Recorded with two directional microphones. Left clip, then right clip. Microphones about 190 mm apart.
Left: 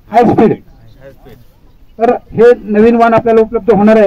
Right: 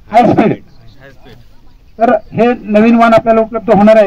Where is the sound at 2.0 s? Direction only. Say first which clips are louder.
Left 3 dB; 40° right (ahead or behind).